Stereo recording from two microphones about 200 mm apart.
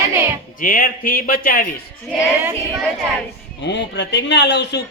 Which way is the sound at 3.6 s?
60° left (ahead or behind).